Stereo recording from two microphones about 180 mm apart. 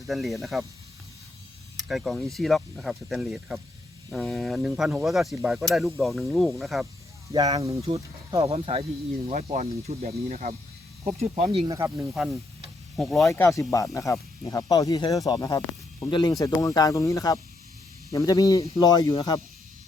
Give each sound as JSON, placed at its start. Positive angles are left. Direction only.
{"t": 0.1, "sound": "speech", "side_deg": 0}
{"t": 1.9, "sound": "speech", "side_deg": 0}
{"t": 7.3, "sound": "speech", "side_deg": -20}
{"t": 7.8, "sound": "speech", "side_deg": -35}
{"t": 11.9, "sound": "speech", "side_deg": -5}
{"t": 13.2, "sound": "speech", "side_deg": 15}